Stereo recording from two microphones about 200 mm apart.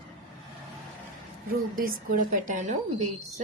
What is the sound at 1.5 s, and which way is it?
A woman's voice, 45° right (ahead or behind).